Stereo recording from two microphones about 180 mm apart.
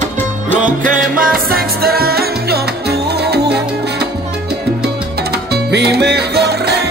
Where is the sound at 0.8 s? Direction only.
50° right (ahead or behind).